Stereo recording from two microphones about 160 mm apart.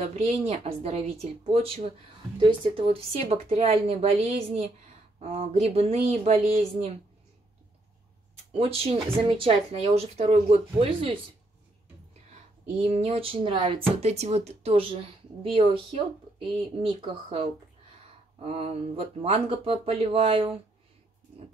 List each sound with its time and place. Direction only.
0.0 s speech: 40° right (ahead or behind)
8.5 s speech: 40° right (ahead or behind)
12.8 s speech: 40° right (ahead or behind)